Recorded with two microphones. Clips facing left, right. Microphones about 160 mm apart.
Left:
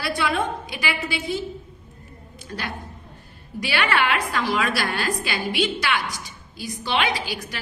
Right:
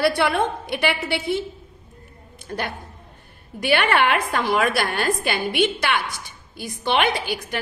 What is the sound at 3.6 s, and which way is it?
A woman's voice, 55° right (ahead or behind).